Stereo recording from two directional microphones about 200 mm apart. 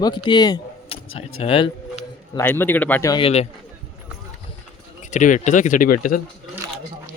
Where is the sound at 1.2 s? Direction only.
25° left (ahead or behind).